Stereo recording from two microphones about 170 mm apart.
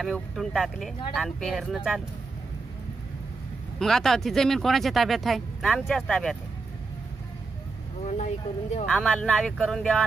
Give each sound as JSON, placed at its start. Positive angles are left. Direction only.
{"t": 0.0, "sound": "speech", "side_deg": 0}
{"t": 3.8, "sound": "speech", "side_deg": 0}
{"t": 8.2, "sound": "speech", "side_deg": 45}
{"t": 8.8, "sound": "speech", "side_deg": 5}